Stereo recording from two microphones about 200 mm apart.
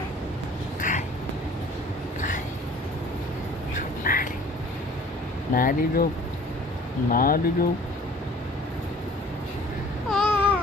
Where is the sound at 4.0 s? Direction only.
45° left (ahead or behind).